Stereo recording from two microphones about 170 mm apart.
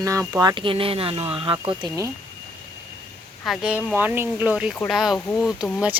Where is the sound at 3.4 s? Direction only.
5° right (ahead or behind).